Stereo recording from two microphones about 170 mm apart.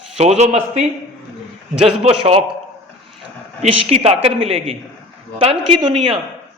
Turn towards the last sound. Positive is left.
turn(degrees=-30)  # may be behind; listen again after turning